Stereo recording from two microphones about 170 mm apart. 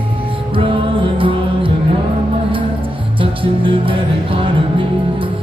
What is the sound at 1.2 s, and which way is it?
Music, 30° right (ahead or behind).